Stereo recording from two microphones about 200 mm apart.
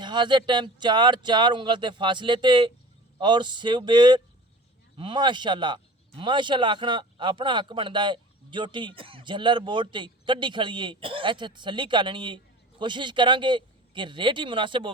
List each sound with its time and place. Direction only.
0.0 s a man's voice: 20° right (ahead or behind)